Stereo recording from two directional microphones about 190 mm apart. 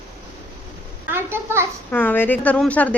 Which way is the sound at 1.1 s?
10° right (ahead or behind).